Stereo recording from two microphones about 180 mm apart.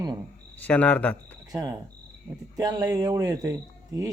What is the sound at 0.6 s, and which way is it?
Speech, 10° left (ahead or behind).